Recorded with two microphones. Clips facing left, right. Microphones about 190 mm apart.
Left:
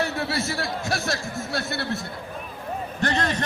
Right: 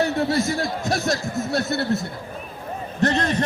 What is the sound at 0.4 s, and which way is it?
Speech, 20° right (ahead or behind).